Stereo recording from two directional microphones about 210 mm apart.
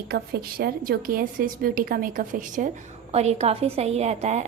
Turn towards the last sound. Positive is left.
turn(degrees=-30)  # may be behind; listen again after turning